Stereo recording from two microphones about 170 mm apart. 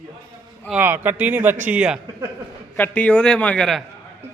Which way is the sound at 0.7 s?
10° right (ahead or behind).